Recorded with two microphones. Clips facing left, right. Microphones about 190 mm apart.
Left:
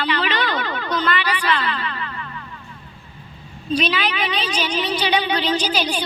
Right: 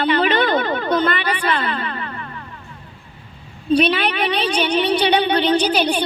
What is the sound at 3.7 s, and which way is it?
Speech, 60° right (ahead or behind).